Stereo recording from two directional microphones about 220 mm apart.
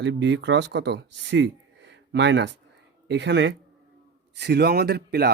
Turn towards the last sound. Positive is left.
turn(degrees=-45)  # may be behind; listen again after turning